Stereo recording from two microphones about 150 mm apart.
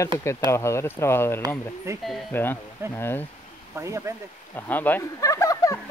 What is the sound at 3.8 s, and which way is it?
Speech, 20° right (ahead or behind).